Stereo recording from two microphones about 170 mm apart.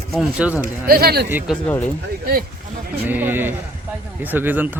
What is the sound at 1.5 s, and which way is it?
Speech, 10° left (ahead or behind).